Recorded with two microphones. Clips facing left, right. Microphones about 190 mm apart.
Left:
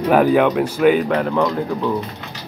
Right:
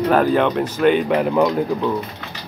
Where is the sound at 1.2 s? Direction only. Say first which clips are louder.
Right 2 dB; 10° right (ahead or behind).